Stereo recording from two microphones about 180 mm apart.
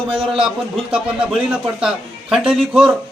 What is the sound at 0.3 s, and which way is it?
A man's voice, 5° right (ahead or behind).